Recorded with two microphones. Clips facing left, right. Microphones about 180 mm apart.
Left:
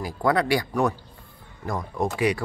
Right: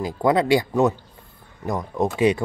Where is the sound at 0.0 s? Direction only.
20° right (ahead or behind).